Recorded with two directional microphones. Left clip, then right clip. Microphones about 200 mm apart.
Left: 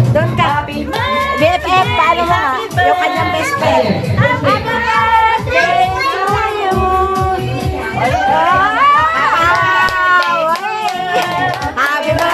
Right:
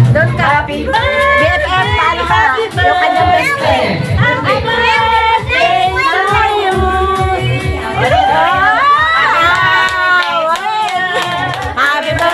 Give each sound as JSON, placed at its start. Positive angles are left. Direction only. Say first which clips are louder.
{"t": 1.4, "sound": "run", "louder": "even", "side_deg": 15}
{"t": 8.4, "sound": "music", "louder": "right 1 dB", "side_deg": 0}